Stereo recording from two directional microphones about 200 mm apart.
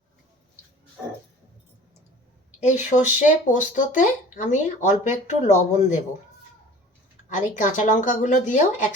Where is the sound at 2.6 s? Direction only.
35° left (ahead or behind).